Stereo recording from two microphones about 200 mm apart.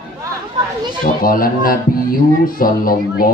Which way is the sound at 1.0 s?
45° left (ahead or behind).